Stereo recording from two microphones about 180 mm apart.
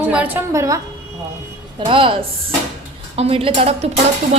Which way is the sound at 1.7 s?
30° right (ahead or behind).